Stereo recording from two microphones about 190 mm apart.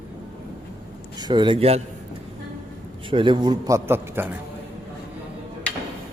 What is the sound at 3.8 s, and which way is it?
Speech, 10° right (ahead or behind).